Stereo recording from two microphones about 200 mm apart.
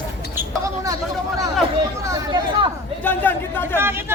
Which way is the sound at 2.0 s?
25° right (ahead or behind).